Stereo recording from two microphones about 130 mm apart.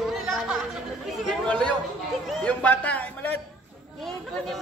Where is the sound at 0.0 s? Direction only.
5° right (ahead or behind).